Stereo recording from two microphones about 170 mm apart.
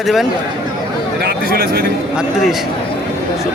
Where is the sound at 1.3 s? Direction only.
65° right (ahead or behind).